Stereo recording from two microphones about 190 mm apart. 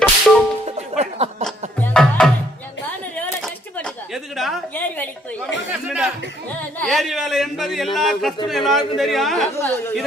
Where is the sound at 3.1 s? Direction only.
5° left (ahead or behind).